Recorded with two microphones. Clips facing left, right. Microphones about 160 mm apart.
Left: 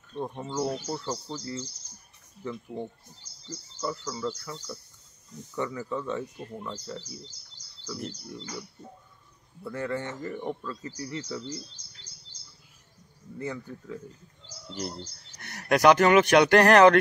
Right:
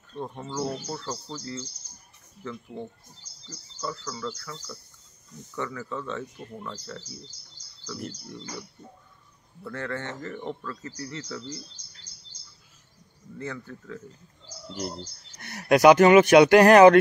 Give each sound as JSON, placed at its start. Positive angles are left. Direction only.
{"t": 0.1, "sound": "speech", "side_deg": 15}
{"t": 9.6, "sound": "speech", "side_deg": 10}
{"t": 13.4, "sound": "speech", "side_deg": 15}
{"t": 14.7, "sound": "speech", "side_deg": 0}